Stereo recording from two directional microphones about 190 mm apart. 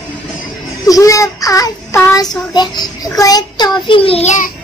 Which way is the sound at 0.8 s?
15° left (ahead or behind).